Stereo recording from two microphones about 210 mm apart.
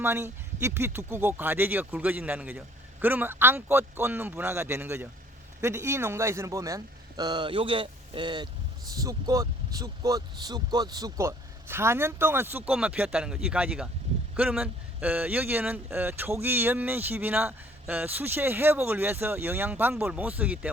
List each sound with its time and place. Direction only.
0.0 s speech: 10° right (ahead or behind)